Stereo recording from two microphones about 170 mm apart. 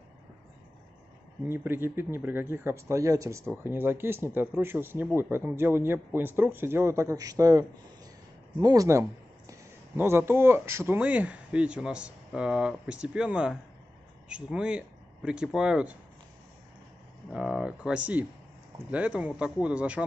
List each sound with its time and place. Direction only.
1.5 s a man's voice: 15° right (ahead or behind)
17.3 s a man's voice: centre (ahead or behind)